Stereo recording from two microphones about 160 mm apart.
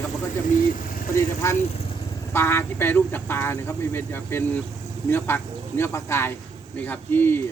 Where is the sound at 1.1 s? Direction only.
15° left (ahead or behind).